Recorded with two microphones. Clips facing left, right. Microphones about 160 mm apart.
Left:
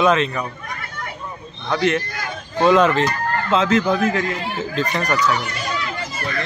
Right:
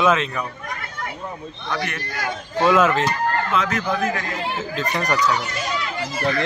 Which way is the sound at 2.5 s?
5° right (ahead or behind).